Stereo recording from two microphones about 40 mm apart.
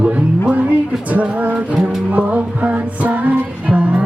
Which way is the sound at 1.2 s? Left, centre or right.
Right.